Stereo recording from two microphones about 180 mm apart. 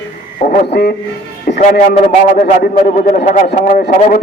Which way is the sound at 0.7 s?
65° left (ahead or behind).